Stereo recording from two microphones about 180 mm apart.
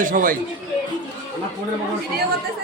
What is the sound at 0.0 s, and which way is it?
Speech, 50° right (ahead or behind).